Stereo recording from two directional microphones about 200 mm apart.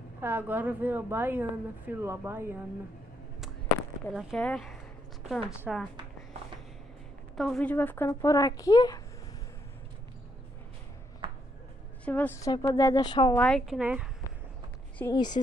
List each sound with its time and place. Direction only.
0.2 s a woman's voice: 10° right (ahead or behind)
4.1 s a woman's voice: centre (ahead or behind)
7.3 s speech: 5° left (ahead or behind); by 9.0 s 20° left (ahead or behind)
12.0 s speech: 10° left (ahead or behind)
13.4 s a woman's voice: 5° left (ahead or behind)
15.0 s speech: 20° left (ahead or behind)